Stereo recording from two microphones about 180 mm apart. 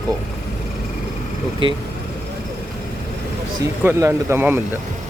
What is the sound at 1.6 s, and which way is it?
Speech, 25° right (ahead or behind).